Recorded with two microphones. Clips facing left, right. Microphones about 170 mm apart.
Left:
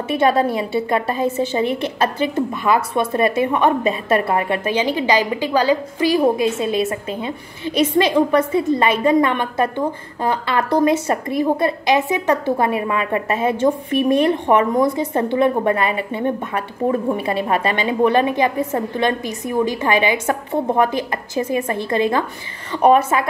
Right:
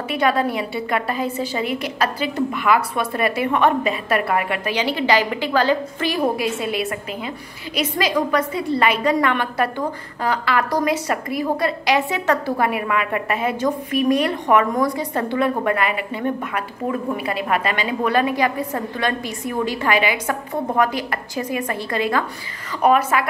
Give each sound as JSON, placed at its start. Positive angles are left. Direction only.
{"t": 0.2, "sound": "a woman's voice", "side_deg": 25}